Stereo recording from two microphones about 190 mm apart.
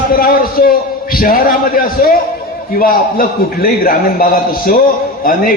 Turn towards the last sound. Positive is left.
turn(degrees=45)  # may be behind; listen again after turning